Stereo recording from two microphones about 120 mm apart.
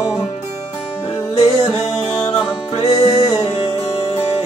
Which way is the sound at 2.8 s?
55° left (ahead or behind).